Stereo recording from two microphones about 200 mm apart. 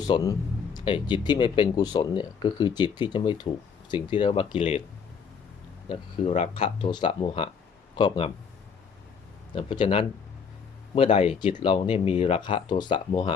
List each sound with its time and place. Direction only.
0.0 s a sound: 20° left (ahead or behind)
0.9 s speech: 25° left (ahead or behind)
5.9 s speech: 30° left (ahead or behind)
9.6 s speech: 25° left (ahead or behind)